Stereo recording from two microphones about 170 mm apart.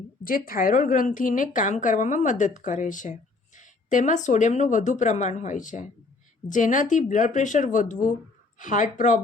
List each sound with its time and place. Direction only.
0.3 s a woman's voice: 55° left (ahead or behind)